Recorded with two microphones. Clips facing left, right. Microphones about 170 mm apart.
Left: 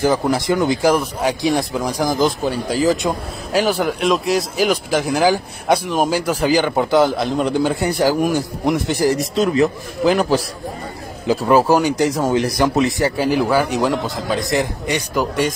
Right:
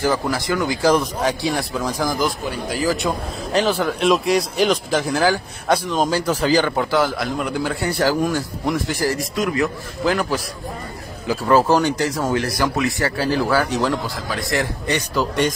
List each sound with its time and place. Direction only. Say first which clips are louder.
0.0 s a man's voice: left 4 dB; 20° left (ahead or behind)
3.5 s speech: left 2 dB; 10° left (ahead or behind)
4.0 s speech: right 2 dB; centre (ahead or behind)